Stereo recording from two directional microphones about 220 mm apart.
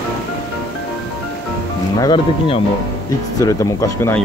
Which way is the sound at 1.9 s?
20° left (ahead or behind).